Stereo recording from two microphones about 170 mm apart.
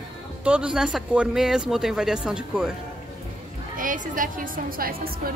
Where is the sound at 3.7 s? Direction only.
50° right (ahead or behind).